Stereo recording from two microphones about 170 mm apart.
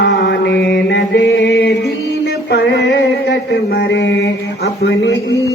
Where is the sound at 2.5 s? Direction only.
85° left.